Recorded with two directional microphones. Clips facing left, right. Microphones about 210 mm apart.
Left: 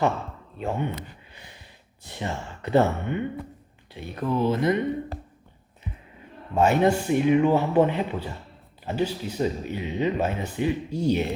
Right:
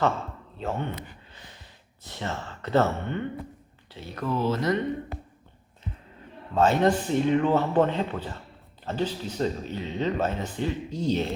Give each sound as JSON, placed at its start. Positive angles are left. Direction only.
{"t": 0.6, "sound": "speech", "side_deg": 15}
{"t": 2.0, "sound": "speech", "side_deg": 15}
{"t": 6.5, "sound": "speech", "side_deg": 10}